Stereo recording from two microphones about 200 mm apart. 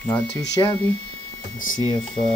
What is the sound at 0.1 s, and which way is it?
Speech, 20° left (ahead or behind).